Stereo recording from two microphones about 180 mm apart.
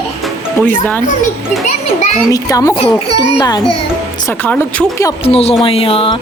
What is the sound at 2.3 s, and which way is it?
Speech, 20° left (ahead or behind).